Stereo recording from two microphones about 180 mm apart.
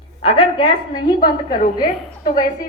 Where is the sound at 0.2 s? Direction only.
30° left (ahead or behind).